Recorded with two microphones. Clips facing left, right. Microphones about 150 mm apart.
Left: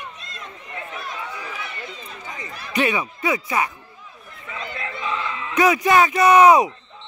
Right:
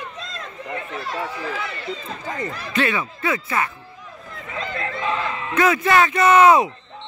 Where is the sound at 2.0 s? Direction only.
90° right.